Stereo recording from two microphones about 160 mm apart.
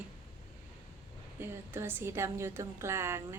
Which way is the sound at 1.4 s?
15° right (ahead or behind).